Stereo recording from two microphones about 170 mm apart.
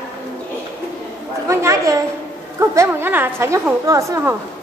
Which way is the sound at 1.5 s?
20° right (ahead or behind).